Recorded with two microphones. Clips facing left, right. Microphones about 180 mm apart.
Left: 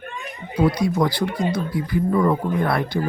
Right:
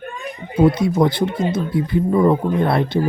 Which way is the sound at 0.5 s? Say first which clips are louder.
Right 4 dB; 25° right (ahead or behind).